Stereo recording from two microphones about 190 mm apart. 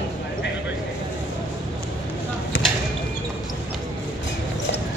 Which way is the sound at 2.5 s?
80° left.